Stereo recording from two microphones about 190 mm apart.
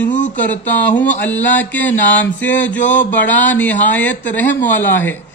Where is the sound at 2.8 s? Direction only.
40° left (ahead or behind).